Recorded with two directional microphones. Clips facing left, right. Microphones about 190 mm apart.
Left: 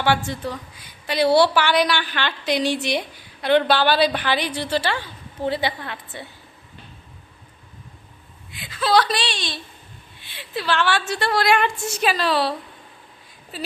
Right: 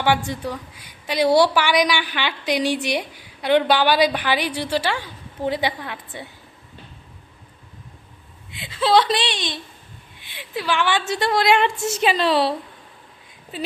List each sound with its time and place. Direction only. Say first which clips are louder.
0.0 s a woman's voice: right 1 dB; 15° right (ahead or behind)
8.4 s a woman's voice: right 2 dB; 25° right (ahead or behind)